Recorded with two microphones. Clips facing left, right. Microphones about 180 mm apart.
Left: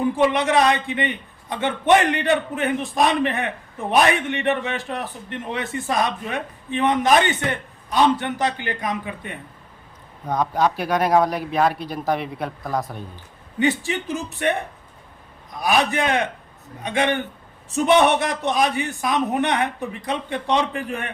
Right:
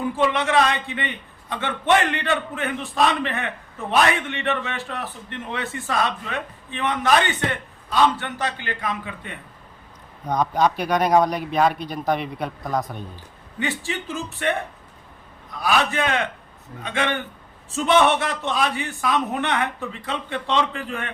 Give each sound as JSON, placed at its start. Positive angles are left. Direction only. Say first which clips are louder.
{"t": 0.2, "sound": "a man's voice", "louder": "left 1 dB", "side_deg": 15}
{"t": 10.2, "sound": "speech", "louder": "even", "side_deg": 0}
{"t": 13.6, "sound": "a man's voice", "louder": "left 6 dB", "side_deg": 15}
{"t": 15.6, "sound": "a man's voice", "louder": "left 2 dB", "side_deg": 15}